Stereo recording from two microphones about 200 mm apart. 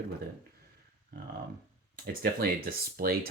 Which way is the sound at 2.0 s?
50° right (ahead or behind).